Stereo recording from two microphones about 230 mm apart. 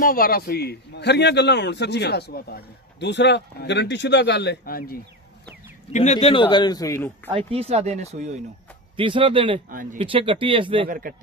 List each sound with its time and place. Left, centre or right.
0.0 s a man's voice: left
5.9 s a man's voice: left
7.3 s speech: right
9.7 s speech: right
9.9 s speech: right
10.9 s speech: right